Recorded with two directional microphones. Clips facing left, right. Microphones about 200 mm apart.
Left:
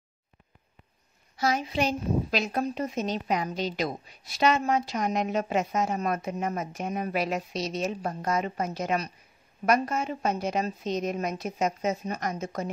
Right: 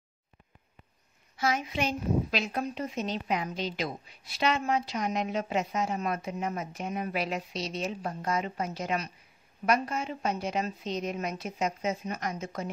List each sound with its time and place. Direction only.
1.3 s a woman's voice: 40° left (ahead or behind)